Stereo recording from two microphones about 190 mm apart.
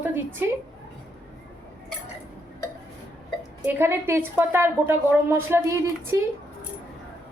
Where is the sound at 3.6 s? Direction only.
10° right (ahead or behind).